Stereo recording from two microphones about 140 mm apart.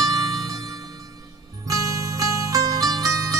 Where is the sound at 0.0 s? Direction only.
25° right (ahead or behind).